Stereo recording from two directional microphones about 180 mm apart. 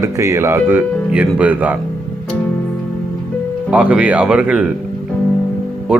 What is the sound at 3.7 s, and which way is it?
Speech, 5° right (ahead or behind).